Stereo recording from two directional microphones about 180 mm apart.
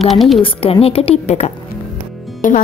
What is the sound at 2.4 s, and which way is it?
Speech, 45° left (ahead or behind).